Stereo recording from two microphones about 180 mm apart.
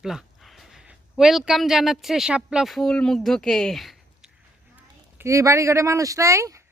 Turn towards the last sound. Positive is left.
turn(degrees=-15)  # may be behind; listen again after turning